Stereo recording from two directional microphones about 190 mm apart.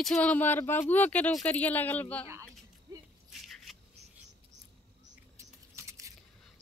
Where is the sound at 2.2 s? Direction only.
15° right (ahead or behind).